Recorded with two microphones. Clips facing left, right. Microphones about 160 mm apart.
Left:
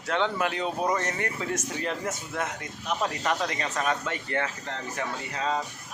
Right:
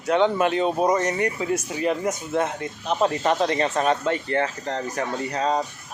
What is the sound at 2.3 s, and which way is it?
A man's voice, 30° right (ahead or behind).